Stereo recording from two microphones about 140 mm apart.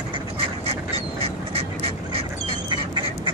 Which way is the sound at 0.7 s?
45° right (ahead or behind).